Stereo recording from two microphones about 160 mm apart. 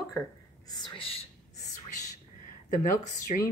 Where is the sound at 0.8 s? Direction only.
35° left (ahead or behind).